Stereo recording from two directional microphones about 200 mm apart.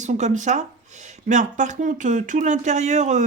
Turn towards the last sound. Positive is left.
turn(degrees=-35)  # may be behind; listen again after turning